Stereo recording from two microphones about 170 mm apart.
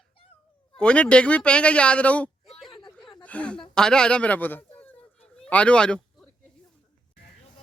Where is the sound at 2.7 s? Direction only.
25° left (ahead or behind).